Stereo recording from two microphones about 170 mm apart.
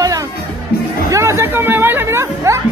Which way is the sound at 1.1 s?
15° right (ahead or behind).